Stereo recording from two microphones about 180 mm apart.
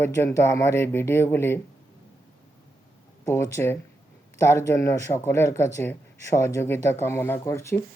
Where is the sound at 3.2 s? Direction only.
15° left (ahead or behind).